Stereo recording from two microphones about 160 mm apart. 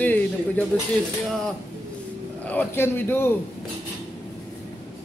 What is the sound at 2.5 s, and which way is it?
Speech, 10° left (ahead or behind).